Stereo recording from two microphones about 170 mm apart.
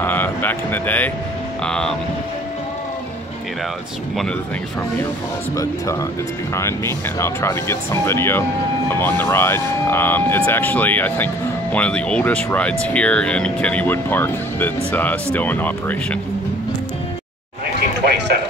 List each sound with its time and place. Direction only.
0.0 s speech: 10° left (ahead or behind)
6.5 s speech: 15° left (ahead or behind)